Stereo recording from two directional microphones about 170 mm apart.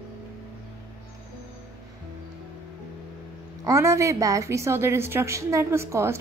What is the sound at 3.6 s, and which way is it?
A woman's voice, 20° right (ahead or behind).